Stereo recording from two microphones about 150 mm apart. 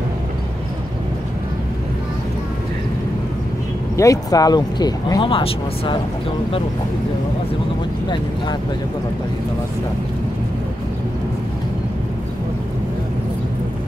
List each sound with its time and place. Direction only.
3.9 s speech: 20° left (ahead or behind)